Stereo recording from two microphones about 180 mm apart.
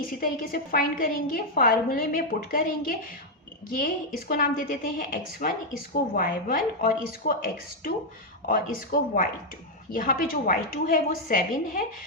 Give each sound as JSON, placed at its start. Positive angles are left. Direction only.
{"t": 0.1, "sound": "speech", "side_deg": 50}